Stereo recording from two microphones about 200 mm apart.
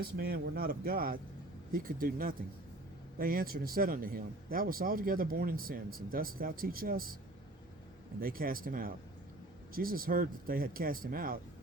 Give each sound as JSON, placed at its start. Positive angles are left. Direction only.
{"t": 0.2, "sound": "speech", "side_deg": -50}
{"t": 8.2, "sound": "speech", "side_deg": -45}